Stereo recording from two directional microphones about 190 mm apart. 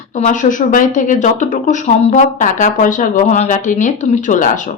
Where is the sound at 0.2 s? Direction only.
40° left (ahead or behind).